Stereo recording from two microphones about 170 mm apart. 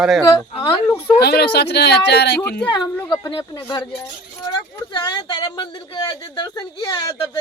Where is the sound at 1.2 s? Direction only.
70° left (ahead or behind).